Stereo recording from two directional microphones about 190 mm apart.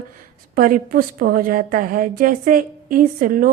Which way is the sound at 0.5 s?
45° right (ahead or behind).